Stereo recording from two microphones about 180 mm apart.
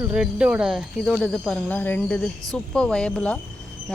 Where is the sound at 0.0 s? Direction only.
5° right (ahead or behind).